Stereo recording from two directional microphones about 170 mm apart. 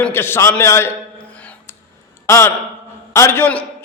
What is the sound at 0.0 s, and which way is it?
Speech, 15° left (ahead or behind).